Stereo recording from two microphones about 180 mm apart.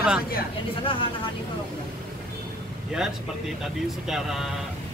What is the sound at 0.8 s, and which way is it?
Speech, 30° left (ahead or behind).